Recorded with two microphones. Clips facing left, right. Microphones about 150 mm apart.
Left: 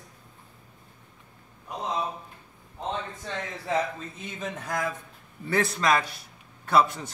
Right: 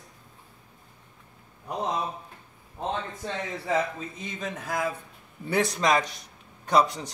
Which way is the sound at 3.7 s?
Centre (ahead or behind).